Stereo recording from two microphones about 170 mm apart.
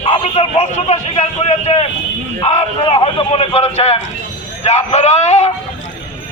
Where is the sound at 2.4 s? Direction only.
35° left (ahead or behind).